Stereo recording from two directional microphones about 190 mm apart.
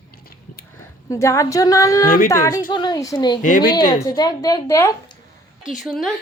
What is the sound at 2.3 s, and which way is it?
A woman's voice, 15° left (ahead or behind).